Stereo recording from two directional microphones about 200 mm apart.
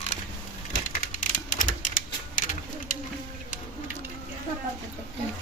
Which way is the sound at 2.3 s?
40° left (ahead or behind).